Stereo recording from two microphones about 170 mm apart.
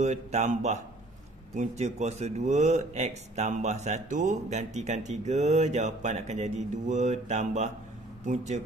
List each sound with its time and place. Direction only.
0.0 s a man's voice: 40° right (ahead or behind)